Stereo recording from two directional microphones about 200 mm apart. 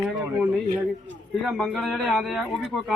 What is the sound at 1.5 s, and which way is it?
Speech, centre (ahead or behind).